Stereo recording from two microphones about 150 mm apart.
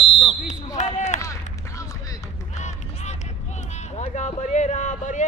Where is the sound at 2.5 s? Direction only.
50° left (ahead or behind).